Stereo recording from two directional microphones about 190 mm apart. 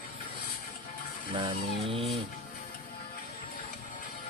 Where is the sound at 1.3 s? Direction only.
30° right (ahead or behind).